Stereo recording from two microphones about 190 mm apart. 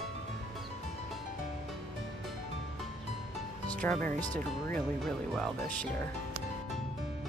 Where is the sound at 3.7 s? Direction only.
5° left (ahead or behind).